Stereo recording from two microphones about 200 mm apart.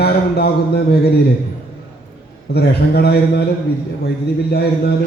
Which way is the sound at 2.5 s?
55° left (ahead or behind).